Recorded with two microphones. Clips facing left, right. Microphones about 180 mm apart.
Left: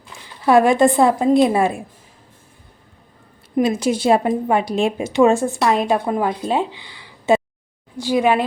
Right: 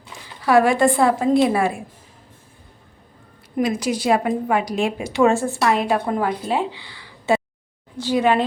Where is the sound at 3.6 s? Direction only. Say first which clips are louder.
Left 3 dB; 25° left (ahead or behind).